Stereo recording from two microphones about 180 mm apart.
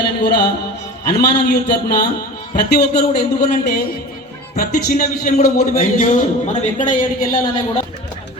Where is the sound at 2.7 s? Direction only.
60° left (ahead or behind).